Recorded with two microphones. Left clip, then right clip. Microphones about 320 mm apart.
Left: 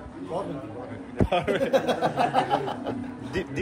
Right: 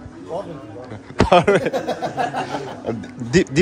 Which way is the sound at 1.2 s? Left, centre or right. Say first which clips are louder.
Right 12 dB; right.